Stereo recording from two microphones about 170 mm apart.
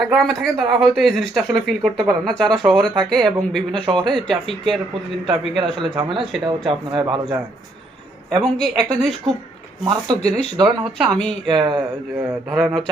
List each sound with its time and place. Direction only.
0.0 s speech: centre (ahead or behind)
3.8 s speech: 30° right (ahead or behind)
4.3 s speech: centre (ahead or behind)
5.7 s speech: 30° right (ahead or behind)
8.4 s speech: 5° left (ahead or behind)
11.4 s speech: 25° right (ahead or behind)
12.5 s speech: centre (ahead or behind)